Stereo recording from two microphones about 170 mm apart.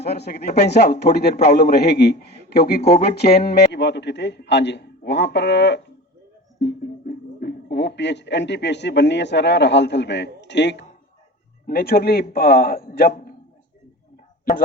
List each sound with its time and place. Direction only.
0.0 s a man's voice: 75° left (ahead or behind)
11.6 s a man's voice: 65° left (ahead or behind)